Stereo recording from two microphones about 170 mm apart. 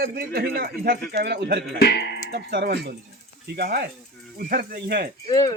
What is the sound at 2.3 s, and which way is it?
Wind chime, 75° right (ahead or behind).